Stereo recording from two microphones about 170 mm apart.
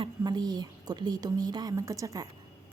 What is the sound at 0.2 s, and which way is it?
A woman's voice, 25° right (ahead or behind).